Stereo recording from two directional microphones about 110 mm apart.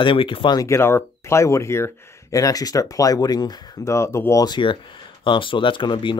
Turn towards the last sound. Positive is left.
turn(degrees=50)  # may be behind; listen again after turning